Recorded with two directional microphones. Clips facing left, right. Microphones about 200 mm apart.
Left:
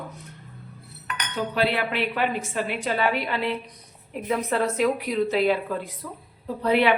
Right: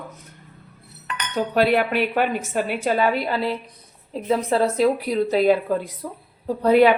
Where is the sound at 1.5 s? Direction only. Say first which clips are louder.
Right 6 dB; 45° right (ahead or behind).